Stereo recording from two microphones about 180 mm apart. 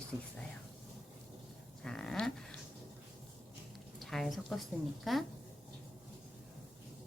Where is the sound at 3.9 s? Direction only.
Centre (ahead or behind).